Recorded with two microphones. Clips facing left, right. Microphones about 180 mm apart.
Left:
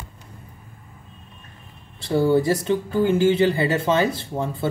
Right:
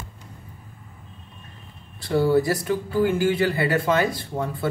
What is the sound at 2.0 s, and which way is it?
Speech, 25° left (ahead or behind).